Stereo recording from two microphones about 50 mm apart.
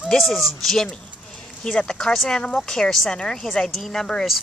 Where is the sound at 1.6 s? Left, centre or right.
Centre.